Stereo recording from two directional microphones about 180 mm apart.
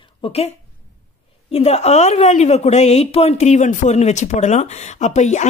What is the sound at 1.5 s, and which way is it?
A woman's voice, 35° left (ahead or behind).